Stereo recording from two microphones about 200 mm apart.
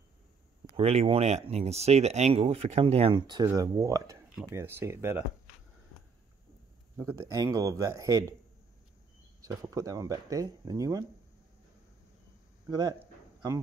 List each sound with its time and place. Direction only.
0.7 s speech: 30° right (ahead or behind); by 5.2 s 10° right (ahead or behind)
7.0 s speech: 15° right (ahead or behind)
9.4 s speech: 15° right (ahead or behind)
12.6 s a man's voice: 20° right (ahead or behind)